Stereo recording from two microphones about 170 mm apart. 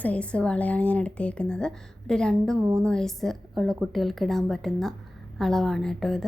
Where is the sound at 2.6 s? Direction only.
15° right (ahead or behind).